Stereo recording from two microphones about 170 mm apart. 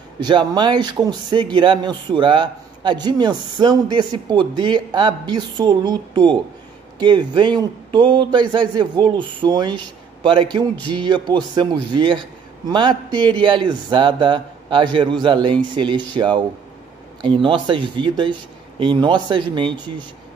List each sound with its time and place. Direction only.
0.2 s speech: 25° right (ahead or behind)